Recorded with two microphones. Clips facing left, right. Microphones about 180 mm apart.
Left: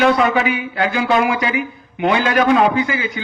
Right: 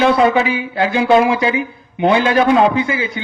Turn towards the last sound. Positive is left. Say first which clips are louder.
# right 1 dB
turn(degrees=-30)  # may be behind; listen again after turning